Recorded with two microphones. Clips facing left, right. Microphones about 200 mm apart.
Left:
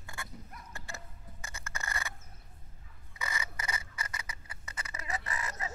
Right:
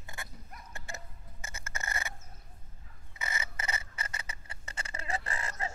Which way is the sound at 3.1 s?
25° right (ahead or behind).